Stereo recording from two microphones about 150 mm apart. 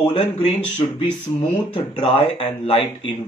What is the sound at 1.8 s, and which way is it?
Speech, 35° left (ahead or behind).